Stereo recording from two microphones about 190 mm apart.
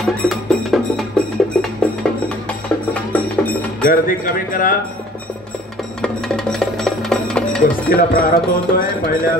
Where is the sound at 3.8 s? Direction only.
45° left (ahead or behind).